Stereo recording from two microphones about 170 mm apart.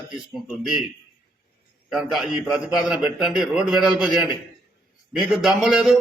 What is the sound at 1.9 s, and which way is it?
A man's voice, centre (ahead or behind).